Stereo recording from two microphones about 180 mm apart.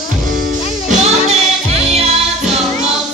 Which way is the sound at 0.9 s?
35° right (ahead or behind).